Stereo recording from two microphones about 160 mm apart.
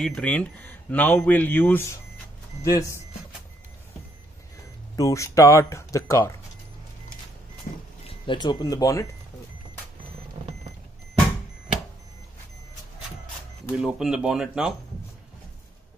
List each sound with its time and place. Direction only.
0.0 s speech: 5° left (ahead or behind)
4.9 s speech: 20° left (ahead or behind)
7.7 s speech: 45° left (ahead or behind)
8.1 s speech: 30° left (ahead or behind)
13.7 s speech: 5° right (ahead or behind)